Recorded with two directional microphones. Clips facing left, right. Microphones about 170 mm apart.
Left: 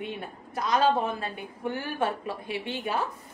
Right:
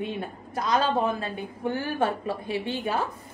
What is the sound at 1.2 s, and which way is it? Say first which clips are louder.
A woman's voice: right 3 dB; 35° right (ahead or behind).